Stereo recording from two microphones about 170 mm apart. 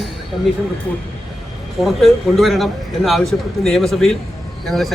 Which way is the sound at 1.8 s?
Centre (ahead or behind).